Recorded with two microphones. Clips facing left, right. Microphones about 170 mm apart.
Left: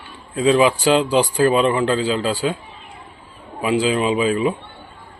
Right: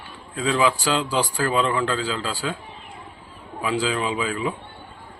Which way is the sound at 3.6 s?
20° left (ahead or behind).